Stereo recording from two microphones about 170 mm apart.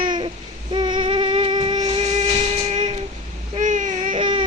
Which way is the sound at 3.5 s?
45° right (ahead or behind).